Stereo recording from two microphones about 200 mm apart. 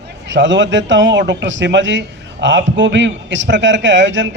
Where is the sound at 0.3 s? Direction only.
65° right (ahead or behind).